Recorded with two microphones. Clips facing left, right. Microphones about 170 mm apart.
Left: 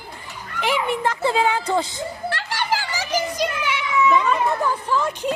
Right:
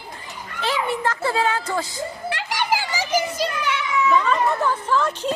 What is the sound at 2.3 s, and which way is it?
Children playing, 15° right (ahead or behind).